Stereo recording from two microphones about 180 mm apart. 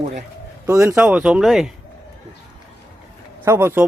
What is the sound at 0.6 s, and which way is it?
Speech, 15° right (ahead or behind).